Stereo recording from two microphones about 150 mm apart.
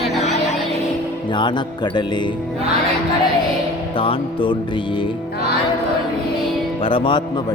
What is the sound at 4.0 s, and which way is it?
Speech, 35° left (ahead or behind).